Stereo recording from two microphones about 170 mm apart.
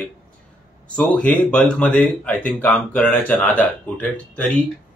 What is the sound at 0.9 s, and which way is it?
Speech, 5° left (ahead or behind).